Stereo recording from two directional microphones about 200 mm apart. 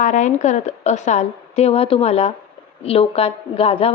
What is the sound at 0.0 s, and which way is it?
A woman's voice, 40° left (ahead or behind).